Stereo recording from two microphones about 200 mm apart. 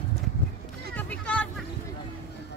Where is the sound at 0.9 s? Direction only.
5° left (ahead or behind).